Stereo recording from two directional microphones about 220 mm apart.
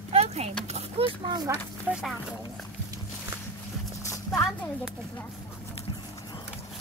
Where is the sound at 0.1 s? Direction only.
30° right (ahead or behind).